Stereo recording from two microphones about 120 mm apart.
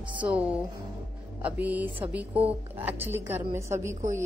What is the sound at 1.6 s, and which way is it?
A woman's voice, 15° right (ahead or behind).